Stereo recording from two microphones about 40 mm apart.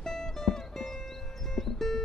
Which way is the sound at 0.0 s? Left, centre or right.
Centre.